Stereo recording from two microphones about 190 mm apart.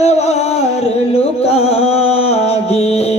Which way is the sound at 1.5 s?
35° left (ahead or behind).